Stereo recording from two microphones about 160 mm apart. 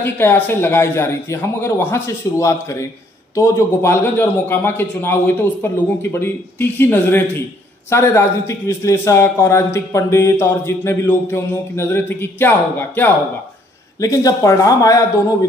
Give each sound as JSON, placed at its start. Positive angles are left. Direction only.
{"t": 0.0, "sound": "a man's voice", "side_deg": 15}